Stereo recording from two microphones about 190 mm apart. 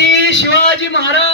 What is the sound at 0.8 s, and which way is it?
Speech, 75° left (ahead or behind).